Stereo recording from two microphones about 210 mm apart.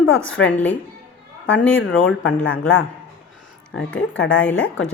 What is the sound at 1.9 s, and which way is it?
Speech, 65° left (ahead or behind).